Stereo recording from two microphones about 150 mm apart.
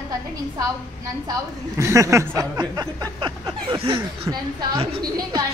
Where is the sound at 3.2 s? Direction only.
30° right (ahead or behind).